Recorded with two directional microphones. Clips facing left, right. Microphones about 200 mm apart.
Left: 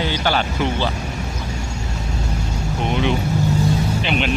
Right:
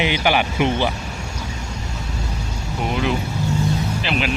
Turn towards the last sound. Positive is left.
turn(degrees=0)  # may be behind; listen again after turning